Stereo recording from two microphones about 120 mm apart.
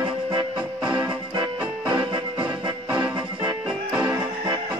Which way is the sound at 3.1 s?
40° right (ahead or behind).